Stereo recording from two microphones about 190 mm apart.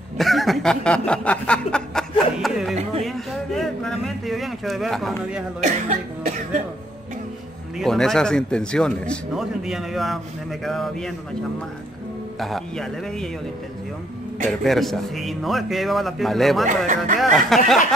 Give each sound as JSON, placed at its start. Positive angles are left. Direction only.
{"t": 0.2, "sound": "snicker", "side_deg": 0}
{"t": 2.7, "sound": "speech", "side_deg": -35}
{"t": 3.0, "sound": "a man's voice", "side_deg": 0}
{"t": 5.6, "sound": "speech", "side_deg": -40}
{"t": 7.8, "sound": "a man's voice", "side_deg": 0}
{"t": 12.4, "sound": "a man's voice", "side_deg": 0}
{"t": 14.5, "sound": "a man's voice", "side_deg": 0}
{"t": 16.6, "sound": "speech", "side_deg": -45}
{"t": 17.2, "sound": "a man's voice", "side_deg": 0}